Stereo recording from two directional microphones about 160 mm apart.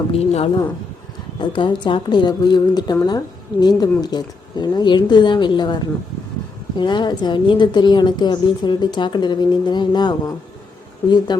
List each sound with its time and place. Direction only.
0.1 s a woman's voice: 40° left (ahead or behind)